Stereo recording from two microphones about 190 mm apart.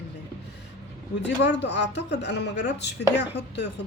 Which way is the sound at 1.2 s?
65° left (ahead or behind).